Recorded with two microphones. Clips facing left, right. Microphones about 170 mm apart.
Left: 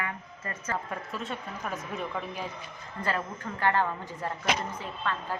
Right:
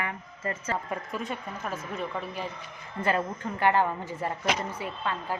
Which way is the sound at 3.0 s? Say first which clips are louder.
Right 4 dB; 20° right (ahead or behind).